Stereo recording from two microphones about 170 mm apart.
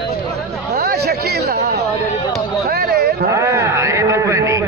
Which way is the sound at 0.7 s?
65° right (ahead or behind).